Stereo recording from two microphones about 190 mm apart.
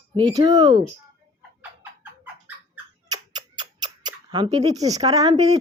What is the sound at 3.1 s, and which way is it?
Scissors, 25° right (ahead or behind).